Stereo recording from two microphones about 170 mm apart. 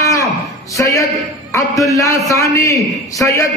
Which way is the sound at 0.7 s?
20° left (ahead or behind).